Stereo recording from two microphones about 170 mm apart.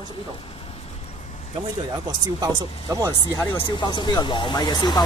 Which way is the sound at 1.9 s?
25° right (ahead or behind).